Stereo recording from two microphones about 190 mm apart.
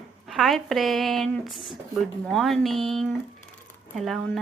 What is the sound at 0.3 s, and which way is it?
Speech, centre (ahead or behind).